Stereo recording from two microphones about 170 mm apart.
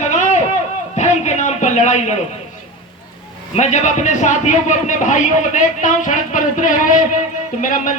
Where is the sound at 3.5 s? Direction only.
45° left (ahead or behind).